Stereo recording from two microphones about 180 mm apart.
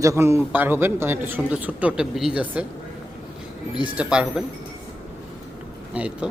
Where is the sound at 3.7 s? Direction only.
5° right (ahead or behind).